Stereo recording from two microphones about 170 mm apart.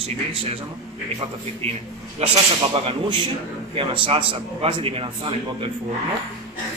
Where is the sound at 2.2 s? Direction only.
35° right (ahead or behind).